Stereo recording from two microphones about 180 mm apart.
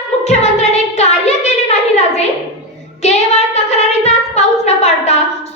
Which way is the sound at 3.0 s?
40° left (ahead or behind).